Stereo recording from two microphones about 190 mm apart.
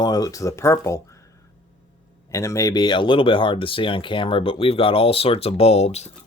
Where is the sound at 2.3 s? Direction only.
15° left (ahead or behind).